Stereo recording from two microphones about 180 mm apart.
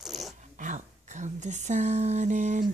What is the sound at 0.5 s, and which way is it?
Speech, 45° right (ahead or behind).